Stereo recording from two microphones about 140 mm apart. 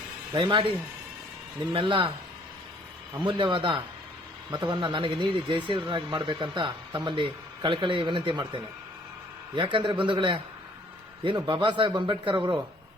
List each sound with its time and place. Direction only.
0.3 s speech: 35° right (ahead or behind)
1.7 s speech: 35° right (ahead or behind)
3.2 s speech: 35° right (ahead or behind)